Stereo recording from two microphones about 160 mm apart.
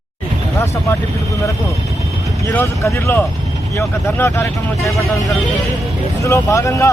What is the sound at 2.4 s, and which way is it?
Speech, 15° left (ahead or behind).